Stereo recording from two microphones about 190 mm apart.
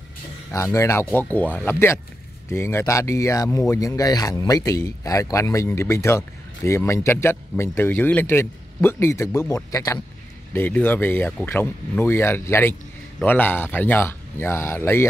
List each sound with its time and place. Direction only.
0.5 s speech: 15° left (ahead or behind)